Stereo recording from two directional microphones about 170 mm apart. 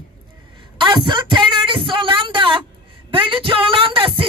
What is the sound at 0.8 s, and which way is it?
Speech, 30° right (ahead or behind).